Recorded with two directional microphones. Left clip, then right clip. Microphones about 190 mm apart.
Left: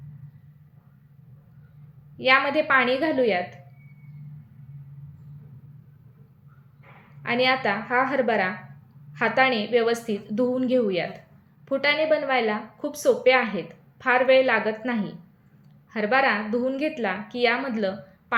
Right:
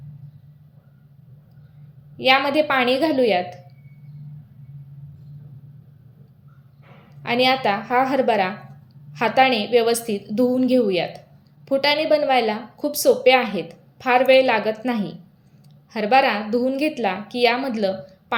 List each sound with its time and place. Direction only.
2.1 s a woman's voice: 25° right (ahead or behind)
7.2 s a woman's voice: 30° right (ahead or behind)